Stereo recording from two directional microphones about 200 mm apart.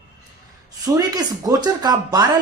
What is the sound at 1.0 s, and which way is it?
Speech, 20° right (ahead or behind).